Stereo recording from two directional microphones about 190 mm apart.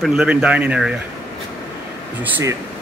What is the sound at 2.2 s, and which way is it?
Speech, 10° right (ahead or behind).